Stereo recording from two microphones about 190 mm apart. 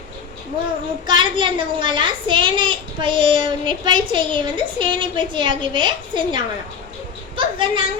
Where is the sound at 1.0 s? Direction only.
25° right (ahead or behind).